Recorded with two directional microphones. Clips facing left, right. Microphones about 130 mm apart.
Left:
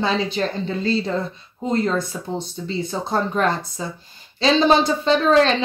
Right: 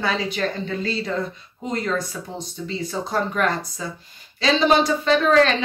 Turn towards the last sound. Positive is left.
turn(degrees=30)  # may be behind; listen again after turning